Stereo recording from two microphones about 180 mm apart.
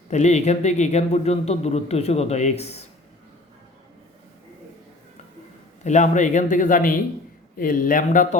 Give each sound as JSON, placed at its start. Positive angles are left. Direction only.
{"t": 0.1, "sound": "a man's voice", "side_deg": 40}
{"t": 5.8, "sound": "a man's voice", "side_deg": 40}